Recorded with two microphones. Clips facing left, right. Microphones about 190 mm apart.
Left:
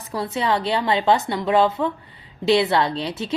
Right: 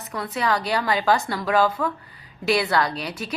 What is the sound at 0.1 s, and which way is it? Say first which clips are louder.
A woman's voice: left 2 dB; 25° left (ahead or behind).